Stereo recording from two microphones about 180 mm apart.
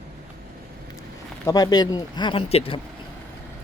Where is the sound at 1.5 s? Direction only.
20° left (ahead or behind).